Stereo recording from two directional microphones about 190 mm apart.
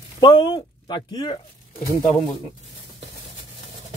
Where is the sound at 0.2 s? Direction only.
20° left (ahead or behind).